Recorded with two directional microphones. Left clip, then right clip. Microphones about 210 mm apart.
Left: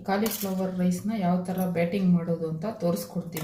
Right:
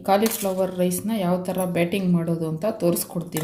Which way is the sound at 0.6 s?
50° right (ahead or behind).